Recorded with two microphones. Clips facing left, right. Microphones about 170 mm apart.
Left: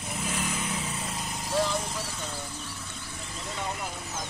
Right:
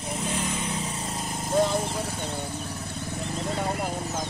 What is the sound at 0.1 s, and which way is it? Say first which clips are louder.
Vehicle: right 3 dB; 30° right (ahead or behind).